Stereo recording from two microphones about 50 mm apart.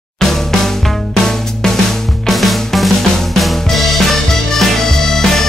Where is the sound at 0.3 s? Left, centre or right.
Centre.